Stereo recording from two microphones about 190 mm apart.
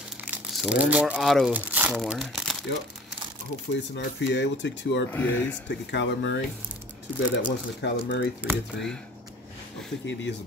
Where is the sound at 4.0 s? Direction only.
70° left (ahead or behind).